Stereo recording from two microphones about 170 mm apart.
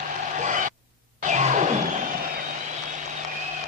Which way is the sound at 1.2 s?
45° right (ahead or behind).